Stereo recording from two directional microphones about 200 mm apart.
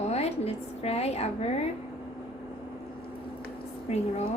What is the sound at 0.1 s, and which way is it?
A woman's voice, 30° left (ahead or behind).